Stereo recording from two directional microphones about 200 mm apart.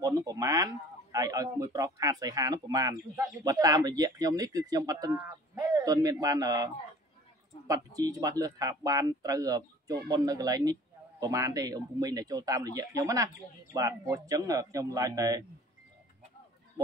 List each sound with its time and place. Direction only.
0.0 s speech: 15° right (ahead or behind)